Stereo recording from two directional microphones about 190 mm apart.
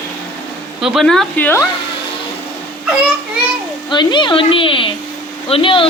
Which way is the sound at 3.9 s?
25° left (ahead or behind).